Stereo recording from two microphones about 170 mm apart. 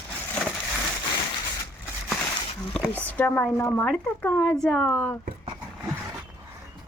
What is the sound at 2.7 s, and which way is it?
Speech, 5° left (ahead or behind).